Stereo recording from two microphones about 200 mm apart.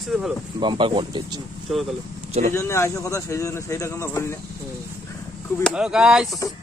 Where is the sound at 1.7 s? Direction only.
Centre (ahead or behind).